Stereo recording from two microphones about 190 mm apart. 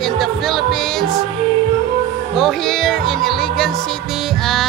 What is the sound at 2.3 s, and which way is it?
Music, centre (ahead or behind).